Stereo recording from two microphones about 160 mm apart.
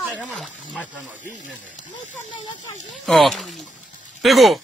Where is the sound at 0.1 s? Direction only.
5° left (ahead or behind).